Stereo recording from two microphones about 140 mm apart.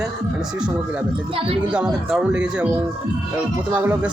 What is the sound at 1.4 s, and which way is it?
Speech, 40° right (ahead or behind).